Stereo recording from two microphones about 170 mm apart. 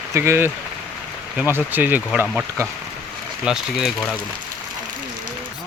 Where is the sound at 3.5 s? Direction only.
Centre (ahead or behind).